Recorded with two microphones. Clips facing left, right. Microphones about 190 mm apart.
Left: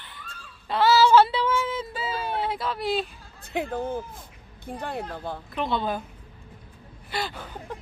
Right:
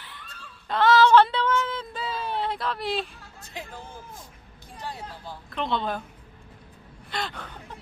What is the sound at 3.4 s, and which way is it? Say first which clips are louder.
Speech: left 12 dB; 60° left (ahead or behind).